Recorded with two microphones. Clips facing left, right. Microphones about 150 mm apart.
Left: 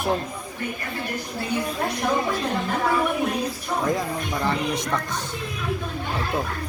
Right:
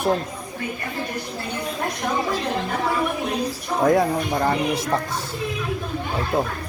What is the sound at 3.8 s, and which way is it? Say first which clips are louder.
Speech: right 9 dB; 50° right (ahead or behind).